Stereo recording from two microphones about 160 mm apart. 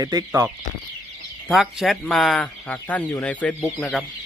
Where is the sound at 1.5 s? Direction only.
Centre (ahead or behind).